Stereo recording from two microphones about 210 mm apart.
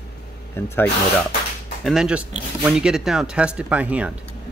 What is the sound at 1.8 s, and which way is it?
Speech, centre (ahead or behind).